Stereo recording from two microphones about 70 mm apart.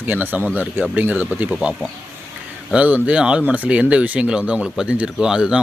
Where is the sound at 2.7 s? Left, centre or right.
Centre.